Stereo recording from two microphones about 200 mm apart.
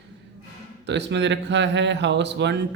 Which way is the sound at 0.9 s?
60° right (ahead or behind).